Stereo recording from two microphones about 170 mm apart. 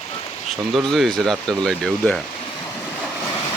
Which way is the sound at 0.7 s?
Centre (ahead or behind).